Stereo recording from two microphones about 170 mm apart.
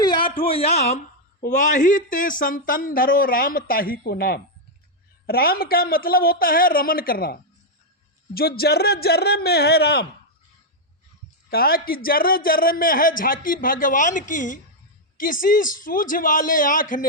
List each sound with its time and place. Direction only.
0.0 s a sound: 30° left (ahead or behind)
0.4 s a man's voice: 35° left (ahead or behind); by 10.1 s 70° left (ahead or behind)
11.5 s a man's voice: 65° left (ahead or behind)